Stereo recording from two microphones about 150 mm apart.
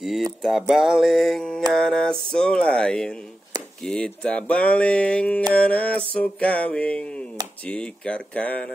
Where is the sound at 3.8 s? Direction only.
5° left (ahead or behind).